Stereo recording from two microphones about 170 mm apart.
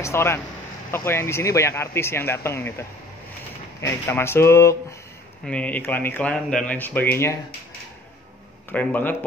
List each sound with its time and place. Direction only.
0.0 s speech: 15° left (ahead or behind)
3.8 s speech: 15° left (ahead or behind)
8.7 s speech: 10° left (ahead or behind)